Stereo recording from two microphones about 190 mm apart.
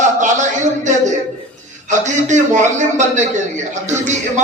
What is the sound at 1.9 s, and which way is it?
A man's voice, 40° right (ahead or behind).